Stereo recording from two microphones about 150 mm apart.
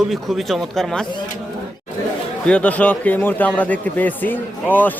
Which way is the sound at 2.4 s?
10° left (ahead or behind).